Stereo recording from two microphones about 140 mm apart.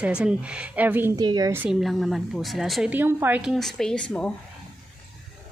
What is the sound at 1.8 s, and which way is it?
Speech, centre (ahead or behind).